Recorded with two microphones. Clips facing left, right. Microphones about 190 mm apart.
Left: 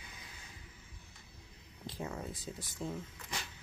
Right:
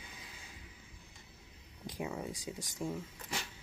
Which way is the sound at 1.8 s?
15° right (ahead or behind).